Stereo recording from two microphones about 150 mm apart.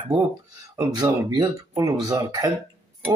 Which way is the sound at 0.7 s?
25° right (ahead or behind).